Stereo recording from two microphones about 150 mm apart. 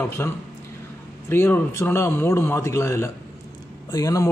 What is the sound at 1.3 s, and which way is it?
A man's voice, 15° left (ahead or behind).